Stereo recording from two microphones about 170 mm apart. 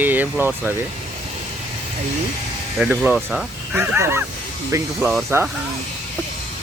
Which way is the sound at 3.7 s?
15° right (ahead or behind).